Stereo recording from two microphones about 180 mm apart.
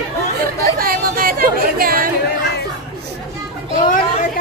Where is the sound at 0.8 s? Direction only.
55° right (ahead or behind).